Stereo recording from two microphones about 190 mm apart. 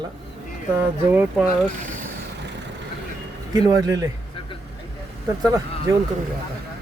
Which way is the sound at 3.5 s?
20° right (ahead or behind).